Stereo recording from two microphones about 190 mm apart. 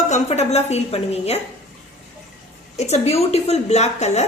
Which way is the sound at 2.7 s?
35° left (ahead or behind).